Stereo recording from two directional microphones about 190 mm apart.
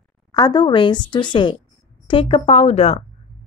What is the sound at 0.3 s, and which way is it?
A woman's voice, 20° left (ahead or behind).